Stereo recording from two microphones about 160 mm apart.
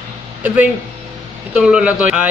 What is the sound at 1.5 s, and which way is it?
Speech, 5° right (ahead or behind).